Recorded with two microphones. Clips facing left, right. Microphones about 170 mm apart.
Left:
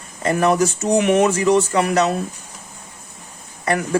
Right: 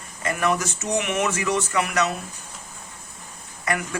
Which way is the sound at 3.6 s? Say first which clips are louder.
Left 6 dB; 35° left (ahead or behind).